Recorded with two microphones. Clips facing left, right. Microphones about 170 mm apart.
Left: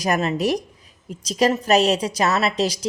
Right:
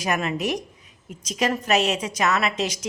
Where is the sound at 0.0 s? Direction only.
35° left (ahead or behind).